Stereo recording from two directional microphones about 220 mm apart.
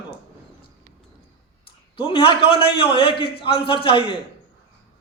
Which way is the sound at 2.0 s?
25° left (ahead or behind).